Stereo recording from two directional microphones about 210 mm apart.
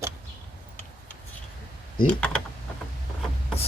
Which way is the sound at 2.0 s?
5° left (ahead or behind).